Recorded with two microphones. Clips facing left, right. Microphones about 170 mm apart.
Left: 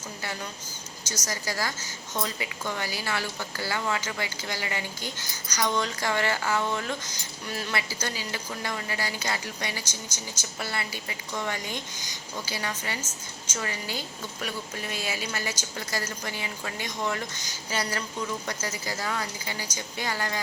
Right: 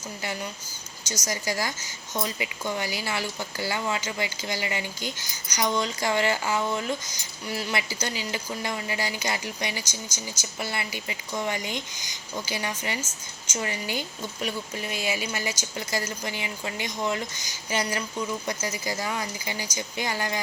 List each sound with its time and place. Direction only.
1.1 s speech: 15° right (ahead or behind)